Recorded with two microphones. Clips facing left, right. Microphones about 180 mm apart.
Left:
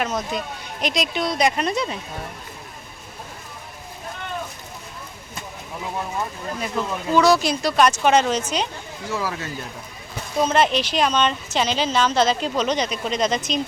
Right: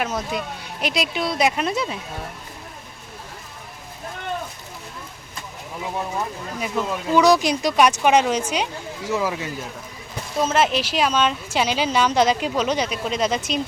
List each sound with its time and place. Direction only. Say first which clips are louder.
0.0 s speech: even; 5° right (ahead or behind)
6.6 s a woman's voice: right 2 dB; 10° right (ahead or behind)
10.3 s a woman's voice: left 1 dB; 5° right (ahead or behind)